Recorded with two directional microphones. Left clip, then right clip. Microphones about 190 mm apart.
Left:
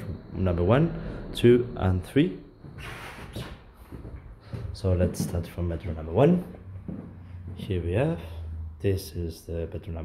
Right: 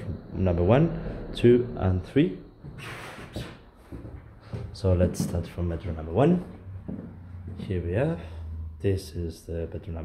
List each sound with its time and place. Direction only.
0.0 s a sound: centre (ahead or behind)
1.3 s speech: 5° left (ahead or behind)
4.7 s speech: 5° right (ahead or behind)
7.5 s speech: 15° left (ahead or behind)